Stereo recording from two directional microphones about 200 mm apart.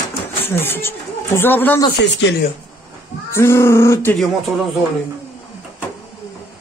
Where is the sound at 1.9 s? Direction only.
60° left (ahead or behind).